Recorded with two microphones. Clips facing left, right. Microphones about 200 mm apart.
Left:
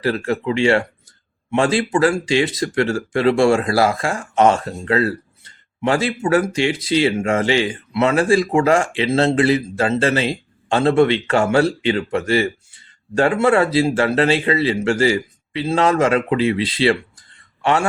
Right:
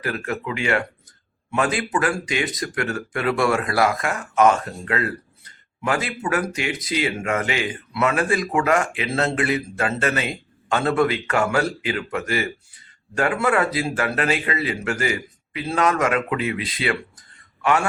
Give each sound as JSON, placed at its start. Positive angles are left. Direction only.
{"t": 0.0, "sound": "speech", "side_deg": 30}